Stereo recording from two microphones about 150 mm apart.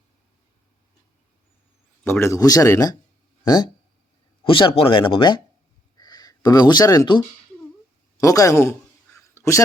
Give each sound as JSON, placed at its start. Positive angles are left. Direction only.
{"t": 2.0, "sound": "speech", "side_deg": 15}
{"t": 4.4, "sound": "speech", "side_deg": 35}
{"t": 8.2, "sound": "speech", "side_deg": 20}
{"t": 9.1, "sound": "a sound", "side_deg": 20}